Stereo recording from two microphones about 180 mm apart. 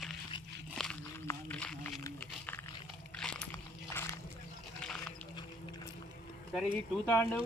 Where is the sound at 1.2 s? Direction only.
5° left (ahead or behind).